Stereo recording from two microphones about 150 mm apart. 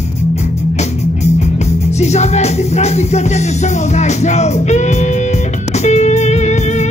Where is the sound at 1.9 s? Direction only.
50° left (ahead or behind).